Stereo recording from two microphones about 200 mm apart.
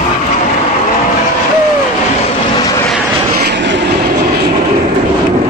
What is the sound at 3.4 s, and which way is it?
Vehicle, 60° right (ahead or behind).